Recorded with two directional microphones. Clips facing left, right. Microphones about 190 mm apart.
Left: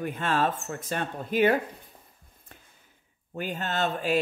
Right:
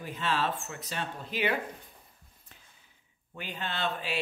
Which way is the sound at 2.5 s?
55° left (ahead or behind).